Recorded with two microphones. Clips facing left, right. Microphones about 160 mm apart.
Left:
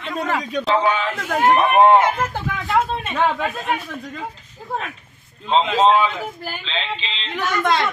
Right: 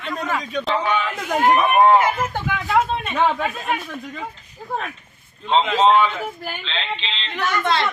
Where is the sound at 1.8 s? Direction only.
25° left (ahead or behind).